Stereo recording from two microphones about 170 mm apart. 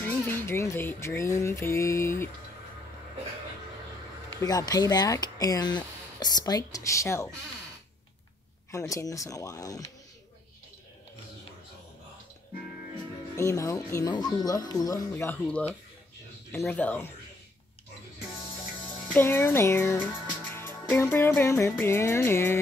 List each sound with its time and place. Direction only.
0.0 s speech: 10° left (ahead or behind)
4.4 s speech: 20° left (ahead or behind)
8.7 s speech: 20° left (ahead or behind)
13.4 s speech: 20° left (ahead or behind)
16.5 s music: 10° left (ahead or behind)
19.1 s speech: 15° left (ahead or behind)
21.4 s music: 15° left (ahead or behind)